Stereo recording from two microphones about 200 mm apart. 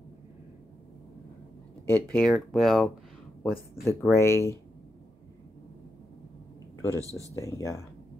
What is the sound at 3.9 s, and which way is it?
Speech, 15° left (ahead or behind).